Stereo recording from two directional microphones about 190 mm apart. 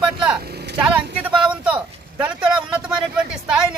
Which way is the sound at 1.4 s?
5° right (ahead or behind).